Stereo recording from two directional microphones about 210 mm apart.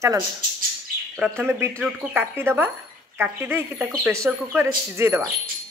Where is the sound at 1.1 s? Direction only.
5° right (ahead or behind).